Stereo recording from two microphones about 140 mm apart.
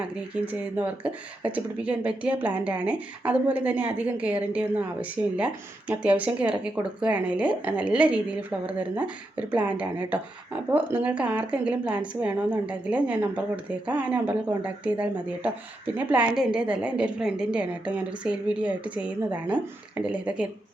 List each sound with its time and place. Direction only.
0.4 s speech: 10° right (ahead or behind)
16.1 s speech: 5° right (ahead or behind)